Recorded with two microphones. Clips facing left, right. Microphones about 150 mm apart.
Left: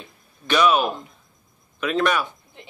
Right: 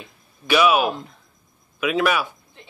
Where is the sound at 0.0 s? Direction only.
5° right (ahead or behind).